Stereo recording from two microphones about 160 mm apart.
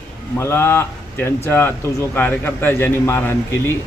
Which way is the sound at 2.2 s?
10° left (ahead or behind).